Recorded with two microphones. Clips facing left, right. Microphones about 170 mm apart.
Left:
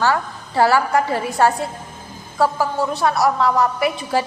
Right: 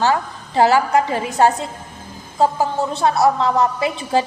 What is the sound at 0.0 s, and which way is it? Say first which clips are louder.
A woman's voice: right 1 dB; 20° right (ahead or behind).